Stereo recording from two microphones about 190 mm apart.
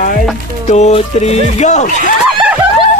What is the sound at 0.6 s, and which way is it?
Speech, 35° left (ahead or behind).